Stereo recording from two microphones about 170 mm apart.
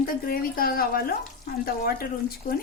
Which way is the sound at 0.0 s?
60° left (ahead or behind).